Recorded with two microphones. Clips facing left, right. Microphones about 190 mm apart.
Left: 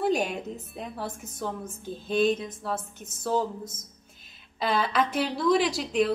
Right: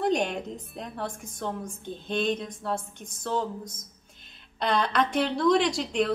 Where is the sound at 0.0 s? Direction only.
5° left (ahead or behind).